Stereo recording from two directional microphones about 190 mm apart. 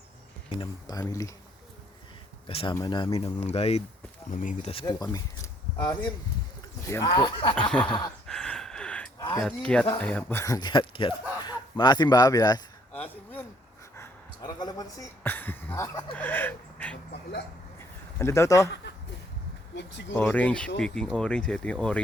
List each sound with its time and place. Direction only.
0.5 s speech: 25° left (ahead or behind)
2.5 s speech: 30° left (ahead or behind)
4.9 s speech: 15° left (ahead or behind)
8.3 s gasp: 5° left (ahead or behind)
9.1 s a sound: 20° left (ahead or behind)
9.4 s speech: 5° left (ahead or behind)
12.9 s a sound: 10° left (ahead or behind)
13.9 s speech: 15° left (ahead or behind)
17.7 s a sound: 15° left (ahead or behind)
19.7 s speech: 70° left (ahead or behind)
20.1 s speech: 5° left (ahead or behind)